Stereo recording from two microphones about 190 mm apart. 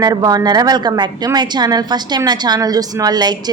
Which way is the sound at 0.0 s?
20° right (ahead or behind).